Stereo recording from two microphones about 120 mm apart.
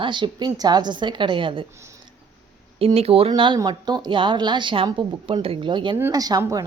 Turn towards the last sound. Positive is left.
turn(degrees=-30)  # may be behind; listen again after turning